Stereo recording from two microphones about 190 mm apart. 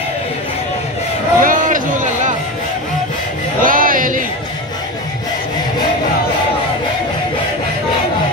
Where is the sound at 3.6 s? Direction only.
45° right (ahead or behind).